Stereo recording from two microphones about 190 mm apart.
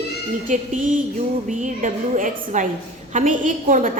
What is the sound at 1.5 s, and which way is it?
A woman's voice, 40° right (ahead or behind).